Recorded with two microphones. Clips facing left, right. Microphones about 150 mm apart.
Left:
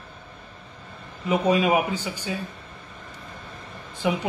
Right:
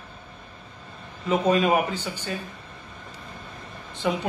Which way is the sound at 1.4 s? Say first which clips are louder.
Even; 10° left (ahead or behind).